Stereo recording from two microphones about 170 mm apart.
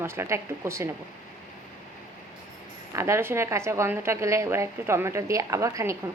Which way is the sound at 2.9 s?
15° right (ahead or behind).